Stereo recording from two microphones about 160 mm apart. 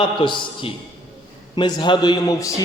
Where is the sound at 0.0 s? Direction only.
30° left (ahead or behind).